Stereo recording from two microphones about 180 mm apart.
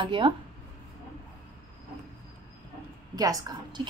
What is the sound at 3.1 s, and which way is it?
Speech, 20° right (ahead or behind).